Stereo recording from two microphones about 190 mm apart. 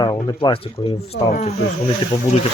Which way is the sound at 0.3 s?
25° left (ahead or behind).